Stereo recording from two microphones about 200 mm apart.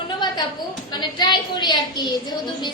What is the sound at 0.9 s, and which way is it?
A woman's voice, 20° left (ahead or behind).